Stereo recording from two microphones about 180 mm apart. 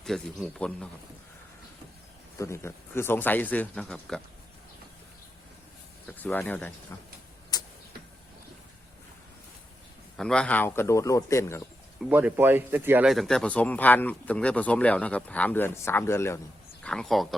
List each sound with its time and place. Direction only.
0.0 s speech: centre (ahead or behind)
2.4 s speech: 15° left (ahead or behind)
6.1 s speech: 10° left (ahead or behind)
7.5 s tick-tock: 20° left (ahead or behind)
10.2 s speech: 5° left (ahead or behind)
11.9 s speech: 5° right (ahead or behind); by 16.4 s 15° left (ahead or behind)
16.8 s speech: 5° left (ahead or behind)